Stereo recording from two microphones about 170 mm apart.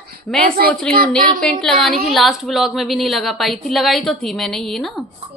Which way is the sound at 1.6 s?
Centre (ahead or behind).